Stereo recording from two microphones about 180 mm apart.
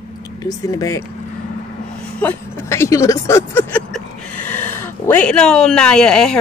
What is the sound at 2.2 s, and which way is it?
Speech, 15° left (ahead or behind).